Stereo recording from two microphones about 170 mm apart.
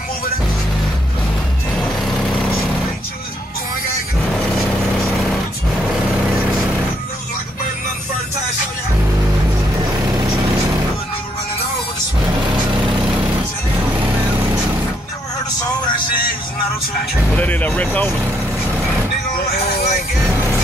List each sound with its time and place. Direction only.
17.3 s vehicle: 10° left (ahead or behind)
19.7 s vehicle: 40° left (ahead or behind)